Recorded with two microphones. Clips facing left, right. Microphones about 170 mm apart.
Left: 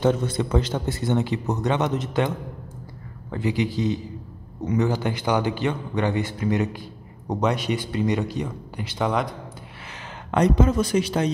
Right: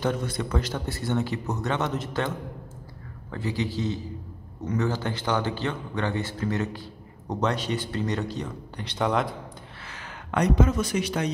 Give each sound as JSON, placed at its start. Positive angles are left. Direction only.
{"t": 0.0, "sound": "a man's voice", "side_deg": 25}
{"t": 10.3, "sound": "a man's voice", "side_deg": 30}